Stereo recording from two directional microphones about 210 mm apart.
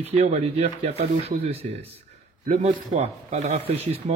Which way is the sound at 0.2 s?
30° right (ahead or behind).